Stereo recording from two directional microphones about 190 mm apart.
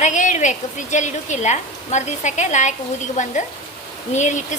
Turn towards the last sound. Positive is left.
turn(degrees=40)  # may be behind; listen again after turning